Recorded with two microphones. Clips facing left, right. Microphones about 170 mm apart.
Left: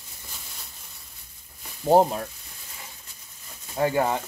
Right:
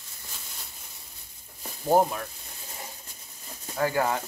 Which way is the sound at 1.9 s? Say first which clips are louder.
Left 4 dB; 30° left (ahead or behind).